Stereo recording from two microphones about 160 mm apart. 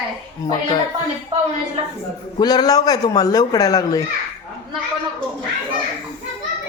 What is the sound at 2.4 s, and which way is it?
A man's voice, 25° left (ahead or behind).